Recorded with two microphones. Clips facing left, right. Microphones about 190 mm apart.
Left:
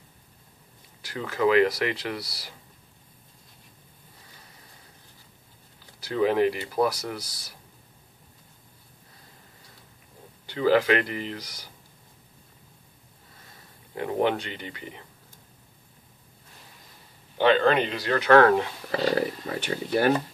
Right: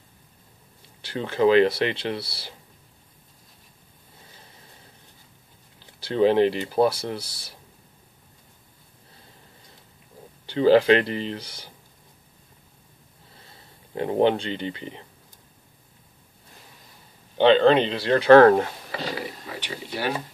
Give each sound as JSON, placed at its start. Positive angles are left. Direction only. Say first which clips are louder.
{"t": 1.0, "sound": "speech", "louder": "right 4 dB", "side_deg": -30}
{"t": 5.9, "sound": "speech", "louder": "right 4 dB", "side_deg": -30}
{"t": 10.4, "sound": "speech", "louder": "right 5 dB", "side_deg": -30}
{"t": 13.9, "sound": "speech", "louder": "right 4 dB", "side_deg": -30}
{"t": 17.4, "sound": "speech", "louder": "right 4 dB", "side_deg": -25}
{"t": 18.9, "sound": "speech", "louder": "left 7 dB", "side_deg": 45}